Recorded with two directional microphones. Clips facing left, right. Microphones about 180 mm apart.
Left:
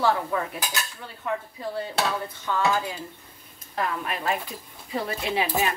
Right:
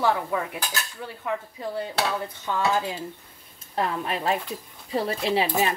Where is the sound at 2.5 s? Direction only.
20° right (ahead or behind).